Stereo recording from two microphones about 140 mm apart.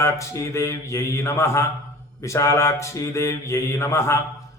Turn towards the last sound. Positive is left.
turn(degrees=20)  # may be behind; listen again after turning